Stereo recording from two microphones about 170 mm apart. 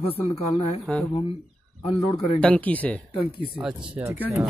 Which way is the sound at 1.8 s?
35° left (ahead or behind).